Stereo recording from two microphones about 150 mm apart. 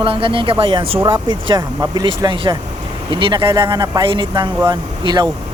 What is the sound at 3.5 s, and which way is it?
Speech, 25° right (ahead or behind).